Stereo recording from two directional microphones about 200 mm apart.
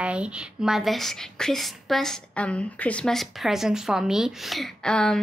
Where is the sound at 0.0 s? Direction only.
5° right (ahead or behind).